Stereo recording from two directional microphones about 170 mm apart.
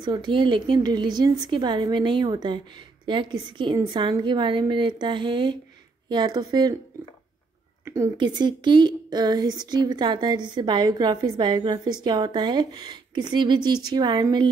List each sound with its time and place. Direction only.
0.0 s a woman's voice: 25° right (ahead or behind)
7.8 s a woman's voice: 20° right (ahead or behind)